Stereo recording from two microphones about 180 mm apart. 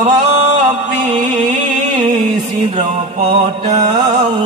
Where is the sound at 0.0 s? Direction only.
35° right (ahead or behind).